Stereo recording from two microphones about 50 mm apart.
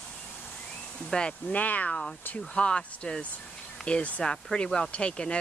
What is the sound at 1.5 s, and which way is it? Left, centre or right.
Speech, left.